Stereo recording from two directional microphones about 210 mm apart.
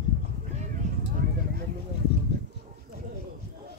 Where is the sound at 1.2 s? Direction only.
45° right (ahead or behind).